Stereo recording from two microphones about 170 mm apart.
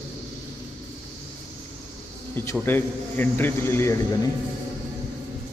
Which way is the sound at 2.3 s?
10° left (ahead or behind).